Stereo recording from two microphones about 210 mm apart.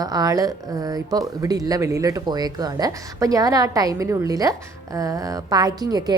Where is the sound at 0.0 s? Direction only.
20° right (ahead or behind).